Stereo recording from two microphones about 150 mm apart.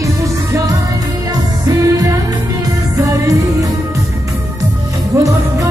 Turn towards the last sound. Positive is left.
turn(degrees=-20)  # may be behind; listen again after turning